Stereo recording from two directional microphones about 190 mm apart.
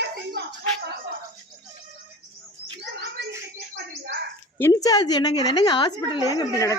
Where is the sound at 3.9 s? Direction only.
60° right (ahead or behind).